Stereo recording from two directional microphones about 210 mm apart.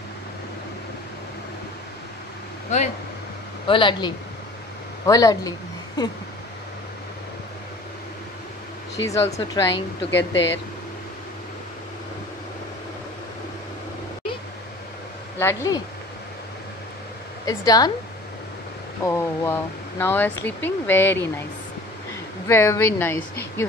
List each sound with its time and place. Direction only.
2.7 s speech: 35° left (ahead or behind)
3.6 s speech: 25° left (ahead or behind)
8.9 s speech: 15° left (ahead or behind)
10.1 s speech: 60° left (ahead or behind)
15.3 s speech: 15° left (ahead or behind)
17.5 s speech: 20° left (ahead or behind)
19.0 s speech: 10° left (ahead or behind)
22.5 s speech: 10° left (ahead or behind)